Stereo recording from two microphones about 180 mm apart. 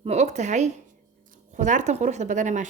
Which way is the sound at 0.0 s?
35° right (ahead or behind).